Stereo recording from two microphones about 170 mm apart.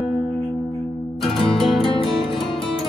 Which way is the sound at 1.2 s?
Centre (ahead or behind).